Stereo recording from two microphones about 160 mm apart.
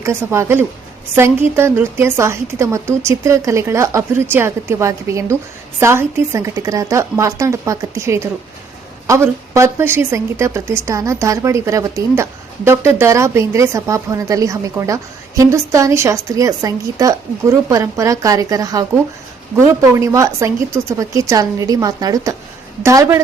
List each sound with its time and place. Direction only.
0.0 s a woman's voice: 15° right (ahead or behind)